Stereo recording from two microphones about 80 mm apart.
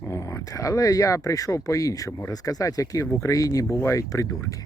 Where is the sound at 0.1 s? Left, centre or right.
Left.